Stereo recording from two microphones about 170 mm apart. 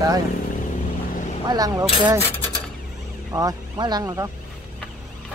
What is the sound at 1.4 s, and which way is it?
Speech, 20° right (ahead or behind).